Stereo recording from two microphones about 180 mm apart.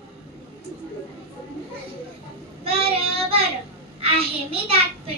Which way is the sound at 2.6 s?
35° right (ahead or behind).